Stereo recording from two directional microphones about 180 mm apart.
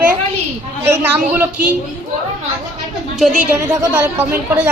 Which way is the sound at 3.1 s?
Centre (ahead or behind).